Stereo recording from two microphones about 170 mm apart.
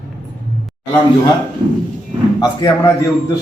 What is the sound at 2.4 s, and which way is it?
Speech, 20° left (ahead or behind).